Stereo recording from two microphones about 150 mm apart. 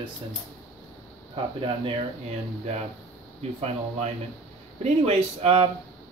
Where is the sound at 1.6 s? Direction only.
35° right (ahead or behind).